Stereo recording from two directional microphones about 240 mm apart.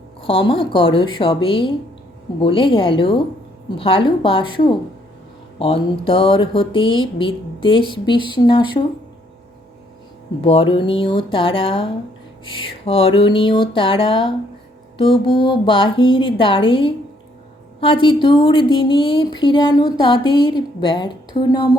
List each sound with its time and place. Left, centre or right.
0.2 s speech: left
10.4 s speech: left